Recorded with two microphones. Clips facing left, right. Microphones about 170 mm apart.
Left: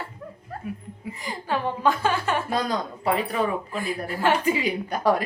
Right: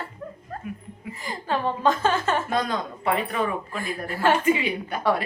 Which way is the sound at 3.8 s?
15° left (ahead or behind).